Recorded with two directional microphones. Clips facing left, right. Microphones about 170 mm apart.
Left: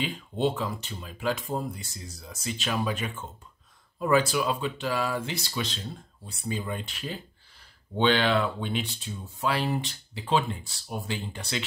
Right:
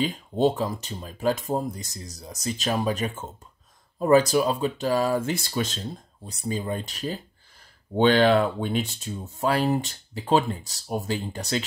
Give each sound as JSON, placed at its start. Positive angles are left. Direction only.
{"t": 0.0, "sound": "speech", "side_deg": -40}